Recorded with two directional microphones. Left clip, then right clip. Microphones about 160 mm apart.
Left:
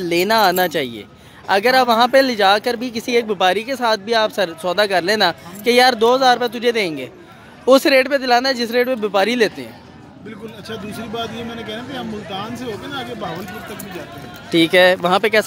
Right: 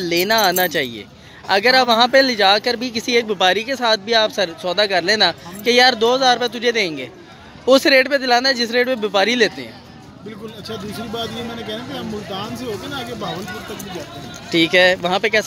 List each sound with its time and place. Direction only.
0.0 s speech: 20° left (ahead or behind)
11.7 s speech: 5° left (ahead or behind)
14.5 s speech: 20° left (ahead or behind)